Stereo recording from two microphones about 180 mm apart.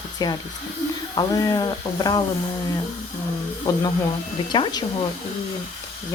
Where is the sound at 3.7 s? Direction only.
20° left (ahead or behind).